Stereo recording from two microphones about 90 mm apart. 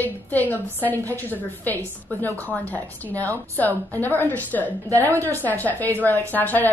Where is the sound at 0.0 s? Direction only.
20° left (ahead or behind).